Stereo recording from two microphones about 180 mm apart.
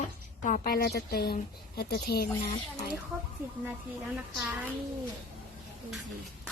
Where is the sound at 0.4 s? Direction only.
50° left (ahead or behind).